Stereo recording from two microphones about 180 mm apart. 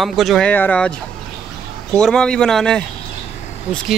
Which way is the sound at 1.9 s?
5° left (ahead or behind).